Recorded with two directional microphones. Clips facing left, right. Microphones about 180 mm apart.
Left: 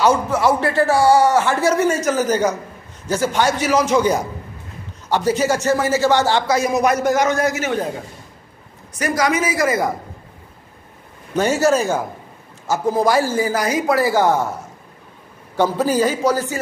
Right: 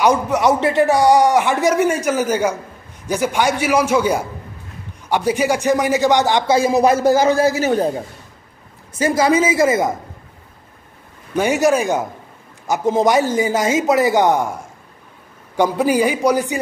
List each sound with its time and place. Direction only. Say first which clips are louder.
0.0 s a man's voice: right 1 dB; 15° right (ahead or behind)
6.5 s a man's voice: right 5 dB; 30° right (ahead or behind)
8.9 s a man's voice: right 4 dB; 25° right (ahead or behind)
11.3 s a man's voice: right 1 dB; 15° right (ahead or behind)